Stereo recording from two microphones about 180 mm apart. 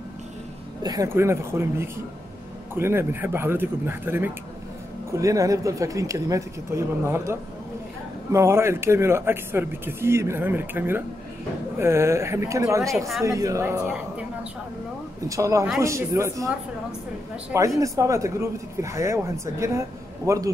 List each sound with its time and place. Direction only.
0.8 s speech: 15° right (ahead or behind)
15.2 s speech: 15° right (ahead or behind)
17.5 s speech: 15° right (ahead or behind)